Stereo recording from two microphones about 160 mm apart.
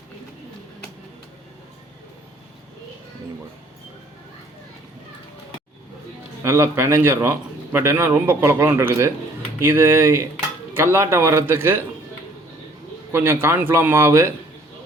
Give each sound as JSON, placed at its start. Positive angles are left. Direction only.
{"t": 6.4, "sound": "a man's voice", "side_deg": -15}
{"t": 13.1, "sound": "a man's voice", "side_deg": -15}